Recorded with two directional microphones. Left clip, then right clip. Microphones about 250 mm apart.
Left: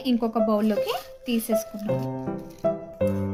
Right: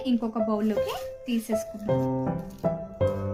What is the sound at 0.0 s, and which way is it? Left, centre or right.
Speech, left.